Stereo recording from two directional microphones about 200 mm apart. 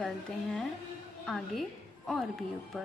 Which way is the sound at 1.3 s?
Centre (ahead or behind).